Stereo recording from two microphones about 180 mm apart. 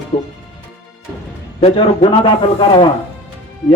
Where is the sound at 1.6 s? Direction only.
35° left (ahead or behind).